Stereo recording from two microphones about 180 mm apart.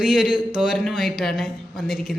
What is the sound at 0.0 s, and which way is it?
A man's voice, 5° right (ahead or behind).